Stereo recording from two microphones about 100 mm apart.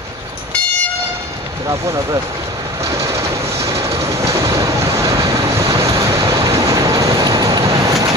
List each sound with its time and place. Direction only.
3.0 s vehicle: 25° right (ahead or behind)